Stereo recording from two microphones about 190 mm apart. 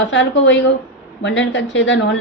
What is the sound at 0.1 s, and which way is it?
A woman's voice, 70° left (ahead or behind).